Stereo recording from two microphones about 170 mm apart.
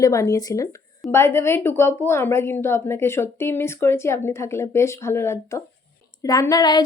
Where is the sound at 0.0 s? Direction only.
20° left (ahead or behind).